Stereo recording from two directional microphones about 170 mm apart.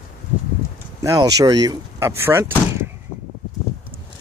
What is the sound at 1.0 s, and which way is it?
Speech, 20° right (ahead or behind).